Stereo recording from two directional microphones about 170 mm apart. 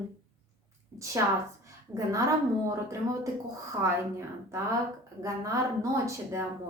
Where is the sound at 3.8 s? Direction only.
15° right (ahead or behind).